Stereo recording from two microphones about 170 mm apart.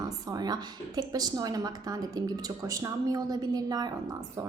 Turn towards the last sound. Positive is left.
turn(degrees=-25)  # may be behind; listen again after turning